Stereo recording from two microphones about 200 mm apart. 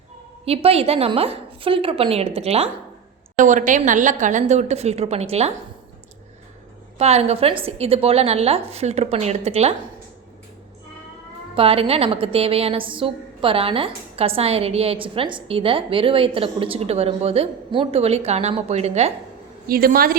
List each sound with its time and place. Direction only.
0.4 s a woman's voice: 30° right (ahead or behind)
7.0 s a woman's voice: 30° right (ahead or behind)
11.5 s a woman's voice: 30° right (ahead or behind)
19.6 s a woman's voice: 45° right (ahead or behind)